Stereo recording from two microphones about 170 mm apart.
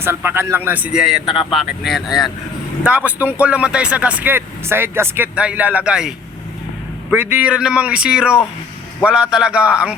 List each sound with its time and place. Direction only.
0.0 s speech: 15° right (ahead or behind)
1.3 s speech: 30° left (ahead or behind)
1.5 s speech: centre (ahead or behind)